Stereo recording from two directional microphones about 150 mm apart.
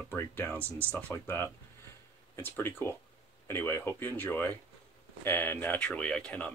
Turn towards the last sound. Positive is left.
turn(degrees=5)  # may be behind; listen again after turning